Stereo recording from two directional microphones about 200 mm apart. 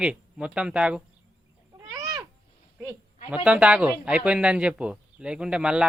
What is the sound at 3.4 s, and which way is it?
A man's voice, 5° right (ahead or behind).